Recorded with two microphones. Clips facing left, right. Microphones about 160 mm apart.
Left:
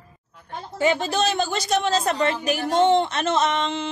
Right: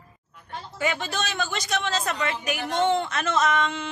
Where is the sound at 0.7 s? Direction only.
30° left (ahead or behind).